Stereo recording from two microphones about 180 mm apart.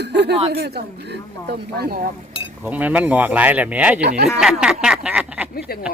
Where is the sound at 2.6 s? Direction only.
10° right (ahead or behind).